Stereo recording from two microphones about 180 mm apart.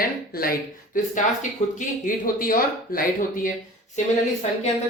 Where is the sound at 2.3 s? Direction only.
50° left (ahead or behind).